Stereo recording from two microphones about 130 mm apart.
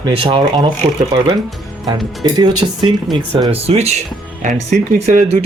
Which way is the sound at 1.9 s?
35° right (ahead or behind).